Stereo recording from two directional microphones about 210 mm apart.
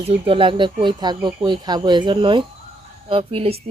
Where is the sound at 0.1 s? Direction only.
25° right (ahead or behind).